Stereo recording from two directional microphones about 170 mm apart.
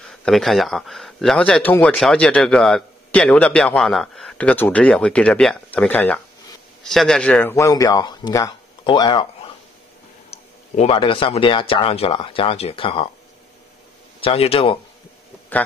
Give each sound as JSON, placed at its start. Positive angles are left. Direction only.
{"t": 0.1, "sound": "speech", "side_deg": 0}
{"t": 14.2, "sound": "speech", "side_deg": 35}